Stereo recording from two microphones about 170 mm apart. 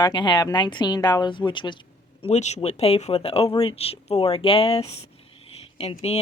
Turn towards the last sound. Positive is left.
turn(degrees=35)  # may be behind; listen again after turning